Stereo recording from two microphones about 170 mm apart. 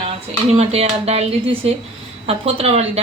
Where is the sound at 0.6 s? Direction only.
35° right (ahead or behind).